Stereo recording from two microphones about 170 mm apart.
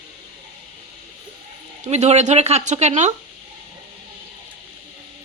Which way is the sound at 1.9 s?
40° right (ahead or behind).